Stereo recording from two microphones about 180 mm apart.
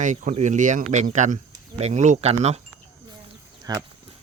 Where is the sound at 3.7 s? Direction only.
20° right (ahead or behind).